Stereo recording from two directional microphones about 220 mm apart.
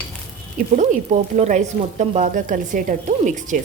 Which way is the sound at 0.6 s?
35° right (ahead or behind).